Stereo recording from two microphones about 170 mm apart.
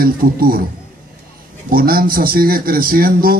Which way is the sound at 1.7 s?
60° right (ahead or behind).